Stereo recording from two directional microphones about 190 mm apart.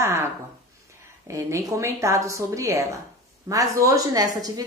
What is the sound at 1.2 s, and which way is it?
A woman's voice, 15° right (ahead or behind).